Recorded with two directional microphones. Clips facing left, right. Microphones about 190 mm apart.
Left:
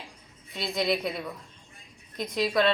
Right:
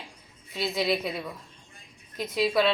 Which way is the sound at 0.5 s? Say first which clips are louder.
Right 1 dB; centre (ahead or behind).